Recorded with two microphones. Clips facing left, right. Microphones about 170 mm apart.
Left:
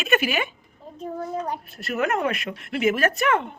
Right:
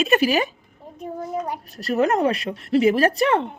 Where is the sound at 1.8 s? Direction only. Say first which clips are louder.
Right 5 dB; 35° right (ahead or behind).